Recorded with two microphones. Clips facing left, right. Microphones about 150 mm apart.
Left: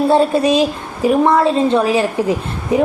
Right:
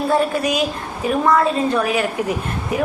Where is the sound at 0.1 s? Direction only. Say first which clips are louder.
Left 4 dB; 30° left (ahead or behind).